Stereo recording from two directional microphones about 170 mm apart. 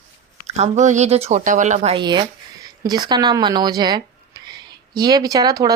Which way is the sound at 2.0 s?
25° right (ahead or behind).